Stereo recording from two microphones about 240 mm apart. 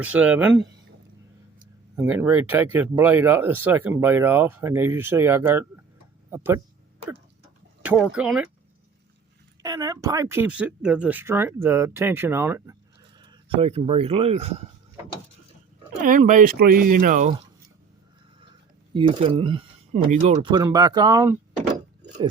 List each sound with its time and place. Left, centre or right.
0.0 s speech: centre
2.0 s speech: centre
7.8 s a sound: centre
8.1 s speech: centre
9.6 s speech: centre
16.0 s speech: right
18.9 s speech: right